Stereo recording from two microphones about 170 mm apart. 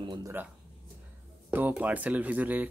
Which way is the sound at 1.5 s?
10° right (ahead or behind).